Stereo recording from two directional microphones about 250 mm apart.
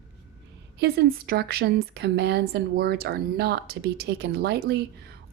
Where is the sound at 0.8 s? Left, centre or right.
Right.